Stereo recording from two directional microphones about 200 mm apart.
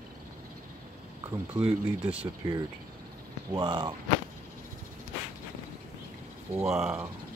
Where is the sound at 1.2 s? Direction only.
15° right (ahead or behind).